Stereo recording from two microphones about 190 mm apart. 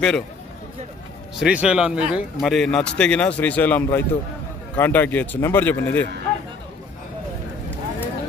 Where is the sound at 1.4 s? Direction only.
5° right (ahead or behind); by 6.0 s 10° left (ahead or behind).